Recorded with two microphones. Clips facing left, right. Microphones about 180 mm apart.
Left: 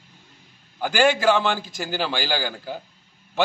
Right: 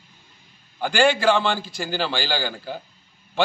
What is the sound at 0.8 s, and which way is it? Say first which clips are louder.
A man's voice: even; 10° left (ahead or behind).